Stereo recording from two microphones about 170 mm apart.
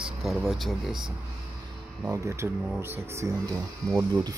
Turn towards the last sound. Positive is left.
turn(degrees=-25)  # may be behind; listen again after turning